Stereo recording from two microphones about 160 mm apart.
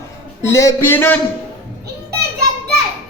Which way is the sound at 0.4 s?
15° left (ahead or behind).